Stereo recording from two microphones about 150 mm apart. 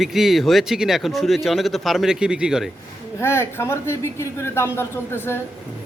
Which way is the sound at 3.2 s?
15° left (ahead or behind).